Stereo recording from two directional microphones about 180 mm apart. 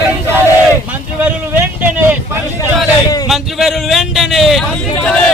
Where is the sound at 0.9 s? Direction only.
10° right (ahead or behind).